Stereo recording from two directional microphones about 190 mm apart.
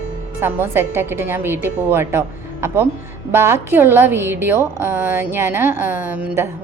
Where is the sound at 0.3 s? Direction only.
10° right (ahead or behind).